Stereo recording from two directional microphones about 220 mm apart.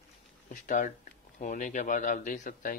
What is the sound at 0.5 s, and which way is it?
Speech, 35° left (ahead or behind).